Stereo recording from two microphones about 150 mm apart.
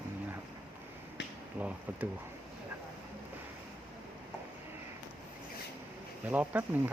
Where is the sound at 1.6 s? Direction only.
10° right (ahead or behind).